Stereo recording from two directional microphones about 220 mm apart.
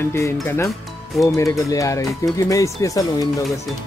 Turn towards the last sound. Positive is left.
turn(degrees=15)  # may be behind; listen again after turning